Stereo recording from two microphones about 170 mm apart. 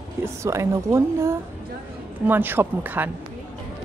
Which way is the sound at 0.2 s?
15° right (ahead or behind).